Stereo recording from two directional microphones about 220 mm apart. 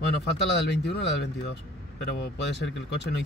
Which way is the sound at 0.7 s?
50° left (ahead or behind).